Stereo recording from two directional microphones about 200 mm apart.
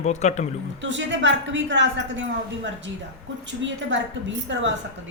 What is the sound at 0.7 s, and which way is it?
A woman's voice, 65° right (ahead or behind).